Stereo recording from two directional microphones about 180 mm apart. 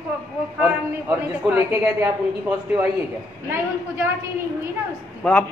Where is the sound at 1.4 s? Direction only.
10° right (ahead or behind).